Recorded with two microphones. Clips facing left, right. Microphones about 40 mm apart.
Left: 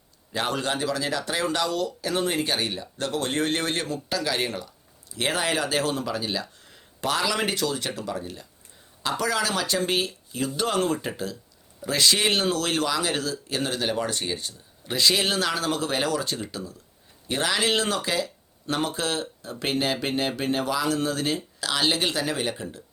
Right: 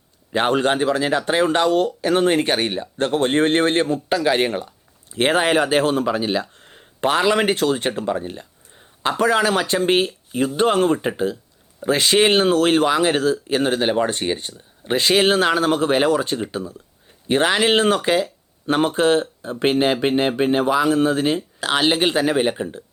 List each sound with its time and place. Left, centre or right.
0.3 s speech: right